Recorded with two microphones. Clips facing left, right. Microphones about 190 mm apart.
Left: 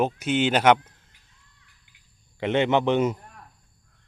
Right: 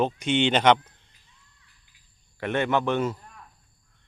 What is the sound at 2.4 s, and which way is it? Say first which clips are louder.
Speech: left 3 dB; 20° left (ahead or behind).